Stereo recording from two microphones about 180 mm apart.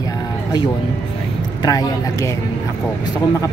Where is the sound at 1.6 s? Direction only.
20° left (ahead or behind).